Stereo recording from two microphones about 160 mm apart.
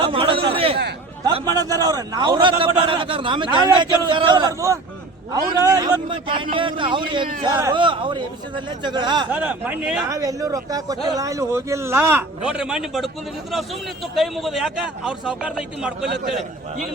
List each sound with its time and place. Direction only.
0.0 s a sound: 35° right (ahead or behind)
1.5 s a man's voice: 20° right (ahead or behind)
9.3 s speech: 10° right (ahead or behind)
10.1 s a man's voice: 20° right (ahead or behind); by 16.0 s 5° right (ahead or behind)